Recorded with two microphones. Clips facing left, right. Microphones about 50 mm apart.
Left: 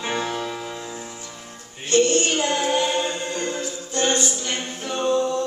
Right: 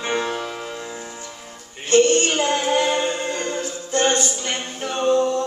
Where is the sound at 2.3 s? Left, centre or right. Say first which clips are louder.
Right 2 dB; right.